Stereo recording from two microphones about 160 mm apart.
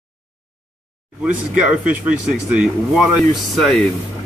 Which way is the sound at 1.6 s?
5° right (ahead or behind).